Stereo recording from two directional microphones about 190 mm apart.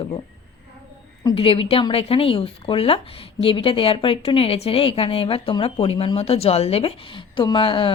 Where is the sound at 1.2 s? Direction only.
25° left (ahead or behind).